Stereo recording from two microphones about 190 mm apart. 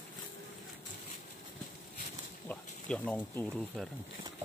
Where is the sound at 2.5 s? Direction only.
5° left (ahead or behind).